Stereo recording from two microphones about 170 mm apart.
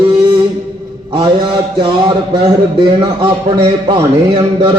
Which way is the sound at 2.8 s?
30° right (ahead or behind).